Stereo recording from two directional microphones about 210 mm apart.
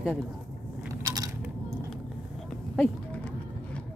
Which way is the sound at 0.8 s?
15° right (ahead or behind).